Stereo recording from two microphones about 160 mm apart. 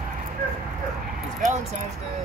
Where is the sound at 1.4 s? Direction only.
50° right (ahead or behind).